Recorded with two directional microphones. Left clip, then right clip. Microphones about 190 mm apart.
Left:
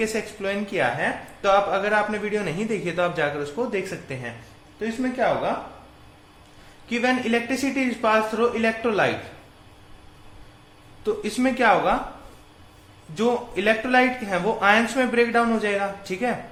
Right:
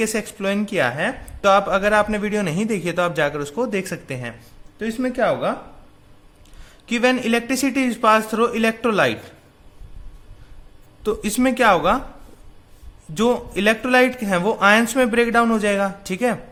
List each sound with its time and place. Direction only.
0.0 s a man's voice: 45° right (ahead or behind)
6.8 s speech: 50° right (ahead or behind)
11.0 s speech: 50° right (ahead or behind)
13.1 s speech: 55° right (ahead or behind)